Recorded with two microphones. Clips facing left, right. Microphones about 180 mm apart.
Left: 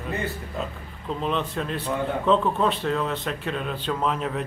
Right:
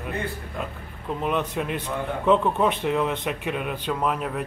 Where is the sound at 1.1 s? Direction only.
15° right (ahead or behind).